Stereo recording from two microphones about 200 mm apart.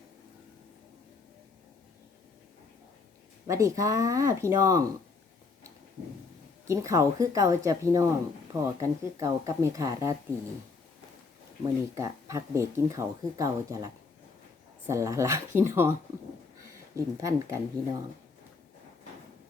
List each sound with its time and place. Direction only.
3.4 s speech: 15° right (ahead or behind)
6.7 s speech: 15° right (ahead or behind)
11.6 s speech: 15° right (ahead or behind)